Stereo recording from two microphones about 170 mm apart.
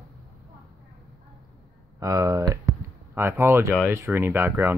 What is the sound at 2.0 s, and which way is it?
Speech, 20° right (ahead or behind).